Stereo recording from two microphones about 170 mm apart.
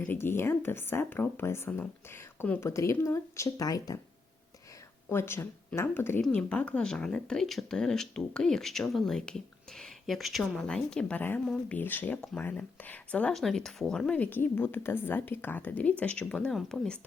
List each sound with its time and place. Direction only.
0.0 s speech: 10° left (ahead or behind)
5.0 s speech: 15° left (ahead or behind)